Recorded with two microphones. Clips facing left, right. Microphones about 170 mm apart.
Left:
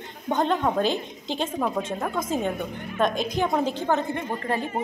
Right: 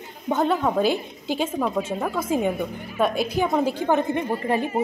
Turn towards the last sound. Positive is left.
turn(degrees=-15)  # may be behind; listen again after turning